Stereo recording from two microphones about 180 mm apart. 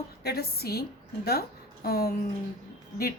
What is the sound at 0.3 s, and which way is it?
A woman's voice, 60° left (ahead or behind).